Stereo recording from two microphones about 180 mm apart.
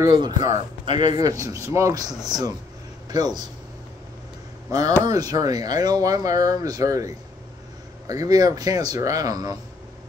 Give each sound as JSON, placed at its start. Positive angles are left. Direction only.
{"t": 0.0, "sound": "a man's voice", "side_deg": -20}
{"t": 4.7, "sound": "a man's voice", "side_deg": -20}